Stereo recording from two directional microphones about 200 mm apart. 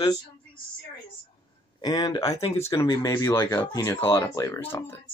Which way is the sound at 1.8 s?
20° left (ahead or behind).